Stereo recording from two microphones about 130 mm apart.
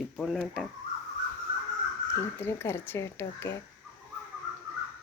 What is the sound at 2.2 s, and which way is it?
Speech, 20° left (ahead or behind).